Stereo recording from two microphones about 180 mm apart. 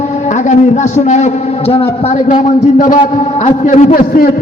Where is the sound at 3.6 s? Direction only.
45° left (ahead or behind).